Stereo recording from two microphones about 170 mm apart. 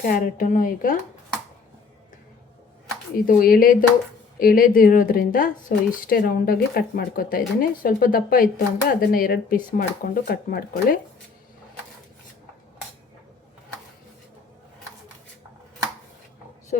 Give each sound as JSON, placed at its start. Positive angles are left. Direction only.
{"t": 0.0, "sound": "a woman's voice", "side_deg": 50}
{"t": 3.2, "sound": "a woman's voice", "side_deg": 55}